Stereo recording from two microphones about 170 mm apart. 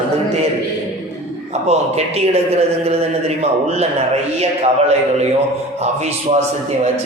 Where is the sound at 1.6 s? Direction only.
40° right (ahead or behind).